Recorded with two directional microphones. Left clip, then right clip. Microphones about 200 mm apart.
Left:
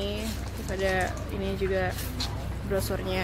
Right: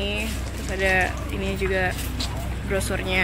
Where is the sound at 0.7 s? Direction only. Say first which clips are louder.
Right 6 dB; 10° left (ahead or behind).